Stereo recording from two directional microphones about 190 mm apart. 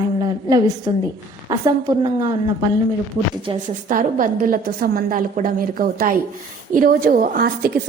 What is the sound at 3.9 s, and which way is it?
A woman's voice, 45° right (ahead or behind).